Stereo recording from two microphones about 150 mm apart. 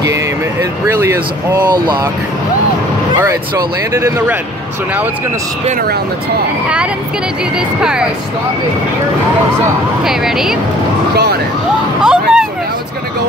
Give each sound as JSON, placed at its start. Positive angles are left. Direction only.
{"t": 0.0, "sound": "speech", "side_deg": -20}
{"t": 3.2, "sound": "speech", "side_deg": -20}
{"t": 7.8, "sound": "speech", "side_deg": -5}
{"t": 10.0, "sound": "speech", "side_deg": -5}
{"t": 12.0, "sound": "vehicle", "side_deg": -5}